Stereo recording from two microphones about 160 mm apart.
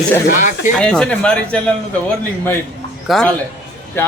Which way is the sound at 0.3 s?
50° left (ahead or behind).